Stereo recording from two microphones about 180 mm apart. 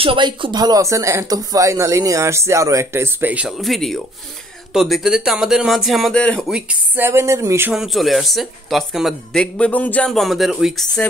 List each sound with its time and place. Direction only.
0.0 s speech: 30° right (ahead or behind)
7.7 s speech: centre (ahead or behind)